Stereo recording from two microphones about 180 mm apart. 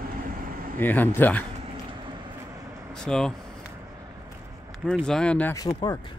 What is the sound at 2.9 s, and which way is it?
Vehicle, 5° left (ahead or behind).